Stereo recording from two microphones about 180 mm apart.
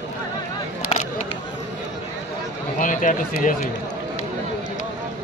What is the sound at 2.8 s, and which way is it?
Run, 45° left (ahead or behind).